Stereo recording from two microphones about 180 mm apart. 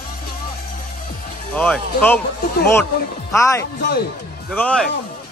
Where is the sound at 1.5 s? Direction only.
10° left (ahead or behind).